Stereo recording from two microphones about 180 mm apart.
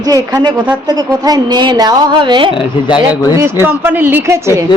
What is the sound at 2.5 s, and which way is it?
Speech, 25° left (ahead or behind).